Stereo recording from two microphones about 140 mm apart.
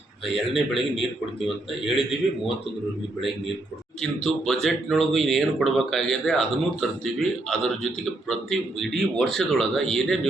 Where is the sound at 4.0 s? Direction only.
5° left (ahead or behind).